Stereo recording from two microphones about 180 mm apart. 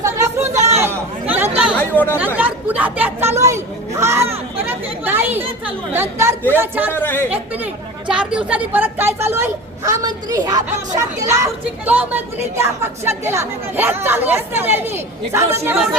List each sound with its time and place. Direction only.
0.0 s chatter: 15° right (ahead or behind)
1.7 s chatter: 10° left (ahead or behind)
2.1 s speech: 10° right (ahead or behind)
6.9 s speech: 10° left (ahead or behind)
7.3 s speech: 5° right (ahead or behind)